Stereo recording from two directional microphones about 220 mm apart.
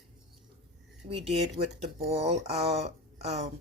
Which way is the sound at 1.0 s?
30° right (ahead or behind).